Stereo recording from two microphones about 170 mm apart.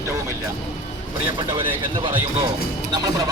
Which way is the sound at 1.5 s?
30° right (ahead or behind).